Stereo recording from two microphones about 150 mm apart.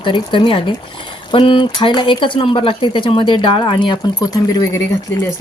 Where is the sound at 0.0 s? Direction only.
30° left (ahead or behind).